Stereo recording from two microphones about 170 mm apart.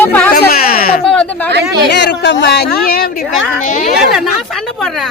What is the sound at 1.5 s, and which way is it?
Speech, 75° right (ahead or behind).